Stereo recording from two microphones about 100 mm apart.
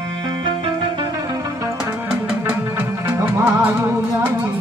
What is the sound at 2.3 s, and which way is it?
Music, 15° right (ahead or behind).